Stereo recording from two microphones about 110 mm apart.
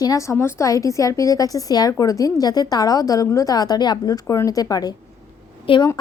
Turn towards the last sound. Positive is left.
turn(degrees=50)  # may be behind; listen again after turning